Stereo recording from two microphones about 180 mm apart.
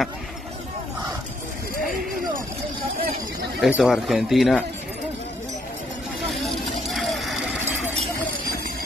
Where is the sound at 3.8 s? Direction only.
Centre (ahead or behind).